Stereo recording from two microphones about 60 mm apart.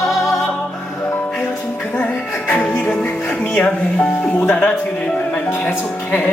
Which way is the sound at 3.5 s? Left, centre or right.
Left.